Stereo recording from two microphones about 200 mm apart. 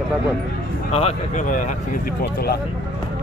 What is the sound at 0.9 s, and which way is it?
Speech, 30° left (ahead or behind).